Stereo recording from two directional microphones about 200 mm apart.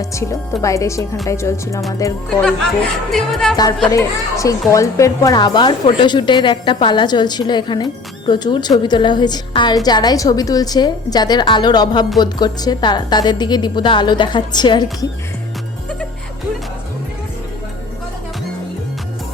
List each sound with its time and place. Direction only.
0.0 s speech: 15° left (ahead or behind)
2.3 s music: 5° left (ahead or behind)
3.9 s a woman's voice: 15° left (ahead or behind)